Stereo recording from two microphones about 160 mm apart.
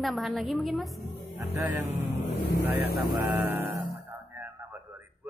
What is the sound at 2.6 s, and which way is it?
Speech, 80° left.